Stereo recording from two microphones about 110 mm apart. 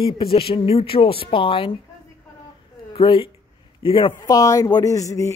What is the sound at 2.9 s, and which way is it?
Speech, 55° left (ahead or behind).